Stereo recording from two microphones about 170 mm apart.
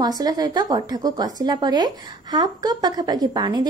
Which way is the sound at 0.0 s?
25° right (ahead or behind).